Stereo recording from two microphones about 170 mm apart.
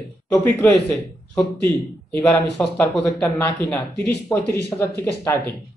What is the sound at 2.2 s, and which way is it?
Speech, 10° left (ahead or behind).